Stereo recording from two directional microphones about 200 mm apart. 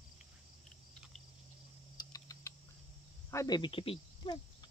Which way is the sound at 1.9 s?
15° left (ahead or behind).